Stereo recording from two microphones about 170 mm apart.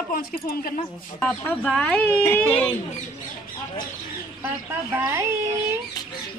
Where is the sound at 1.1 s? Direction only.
10° left (ahead or behind).